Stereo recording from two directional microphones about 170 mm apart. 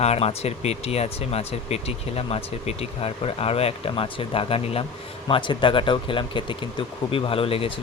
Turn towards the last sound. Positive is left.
turn(degrees=35)  # may be behind; listen again after turning